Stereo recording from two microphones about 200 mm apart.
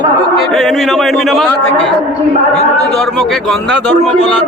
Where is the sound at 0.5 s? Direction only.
Centre (ahead or behind).